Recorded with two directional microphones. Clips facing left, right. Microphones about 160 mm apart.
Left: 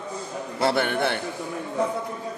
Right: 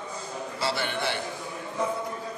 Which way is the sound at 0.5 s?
55° left (ahead or behind).